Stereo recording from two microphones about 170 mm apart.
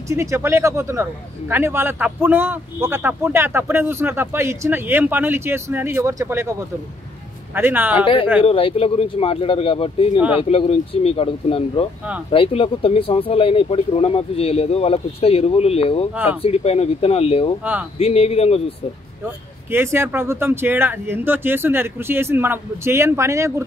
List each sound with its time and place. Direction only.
0.1 s speech: 15° right (ahead or behind)
7.5 s speech: 10° right (ahead or behind)
8.4 s speech: 30° left (ahead or behind)
19.7 s speech: 15° right (ahead or behind)